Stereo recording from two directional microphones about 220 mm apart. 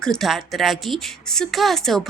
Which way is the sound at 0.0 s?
Centre (ahead or behind).